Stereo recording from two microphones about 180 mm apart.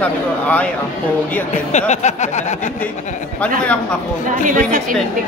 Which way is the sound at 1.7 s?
40° left (ahead or behind).